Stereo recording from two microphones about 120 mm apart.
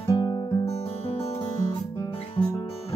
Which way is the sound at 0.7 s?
55° left (ahead or behind).